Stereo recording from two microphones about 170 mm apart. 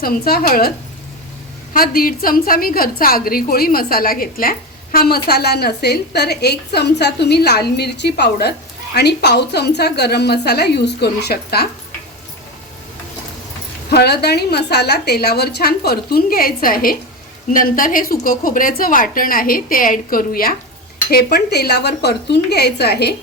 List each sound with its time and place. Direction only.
0.0 s a woman's voice: 60° left (ahead or behind)
1.7 s a woman's voice: 60° left (ahead or behind)
13.9 s a woman's voice: 70° left (ahead or behind)